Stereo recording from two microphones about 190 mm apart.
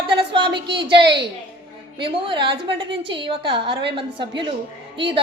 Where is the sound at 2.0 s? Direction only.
30° right (ahead or behind).